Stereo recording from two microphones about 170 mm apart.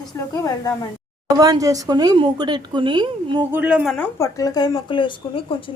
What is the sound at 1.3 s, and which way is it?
Speech, 20° right (ahead or behind).